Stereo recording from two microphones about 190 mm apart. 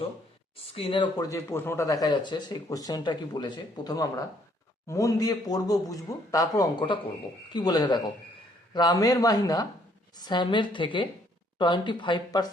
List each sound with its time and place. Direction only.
0.5 s speech: 30° left (ahead or behind)